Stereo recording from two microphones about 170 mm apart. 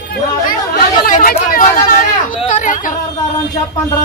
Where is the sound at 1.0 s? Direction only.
55° left (ahead or behind).